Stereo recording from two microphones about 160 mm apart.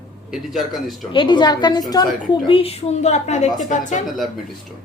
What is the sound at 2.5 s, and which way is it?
A woman's voice, 35° left (ahead or behind).